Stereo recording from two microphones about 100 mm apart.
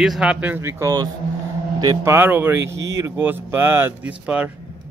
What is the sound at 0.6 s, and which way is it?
Speech, 25° right (ahead or behind).